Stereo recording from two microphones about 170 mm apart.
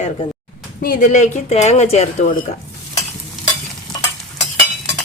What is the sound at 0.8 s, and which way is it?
Speech, 55° left (ahead or behind).